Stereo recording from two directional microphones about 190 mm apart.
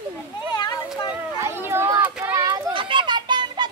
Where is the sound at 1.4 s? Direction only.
15° right (ahead or behind).